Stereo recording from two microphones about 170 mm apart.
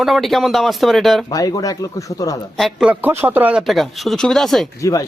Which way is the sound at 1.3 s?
20° left (ahead or behind).